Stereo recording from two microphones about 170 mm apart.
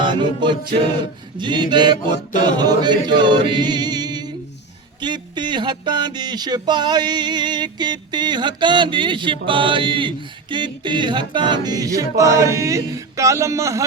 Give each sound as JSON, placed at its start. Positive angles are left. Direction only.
{"t": 0.0, "sound": "music", "side_deg": -25}
{"t": 1.4, "sound": "speech", "side_deg": -25}